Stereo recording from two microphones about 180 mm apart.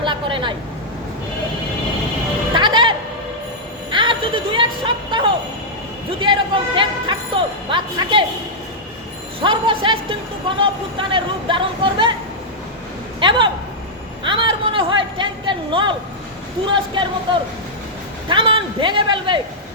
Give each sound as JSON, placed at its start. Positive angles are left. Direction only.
{"t": 0.0, "sound": "vehicle", "side_deg": -25}
{"t": 2.6, "sound": "music", "side_deg": -25}
{"t": 3.9, "sound": "music", "side_deg": -30}
{"t": 9.4, "sound": "speech", "side_deg": -25}
{"t": 13.1, "sound": "a man's voice", "side_deg": -25}
{"t": 18.3, "sound": "speech", "side_deg": -30}